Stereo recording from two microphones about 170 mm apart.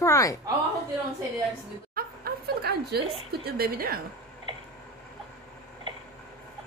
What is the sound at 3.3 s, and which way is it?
Speech, 65° right (ahead or behind).